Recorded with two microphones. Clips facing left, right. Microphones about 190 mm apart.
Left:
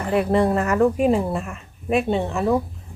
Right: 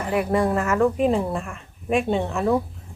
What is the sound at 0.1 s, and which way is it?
Speech, 25° left (ahead or behind).